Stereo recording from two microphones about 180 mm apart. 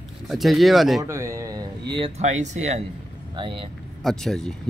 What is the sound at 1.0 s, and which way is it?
Speech, 15° right (ahead or behind).